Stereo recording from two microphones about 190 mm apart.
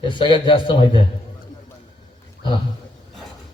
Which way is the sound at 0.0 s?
25° left (ahead or behind).